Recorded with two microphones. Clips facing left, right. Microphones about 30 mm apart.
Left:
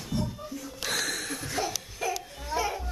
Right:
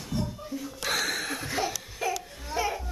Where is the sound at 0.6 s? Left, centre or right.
Centre.